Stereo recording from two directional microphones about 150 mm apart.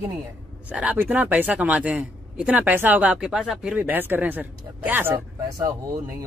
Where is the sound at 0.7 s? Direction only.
10° right (ahead or behind).